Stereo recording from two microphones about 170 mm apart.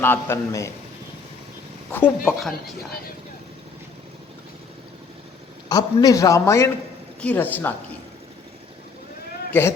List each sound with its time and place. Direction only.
0.0 s a man's voice: 15° left (ahead or behind)
1.9 s a man's voice: 10° left (ahead or behind)
5.6 s a man's voice: 20° left (ahead or behind)
9.5 s a man's voice: 15° left (ahead or behind)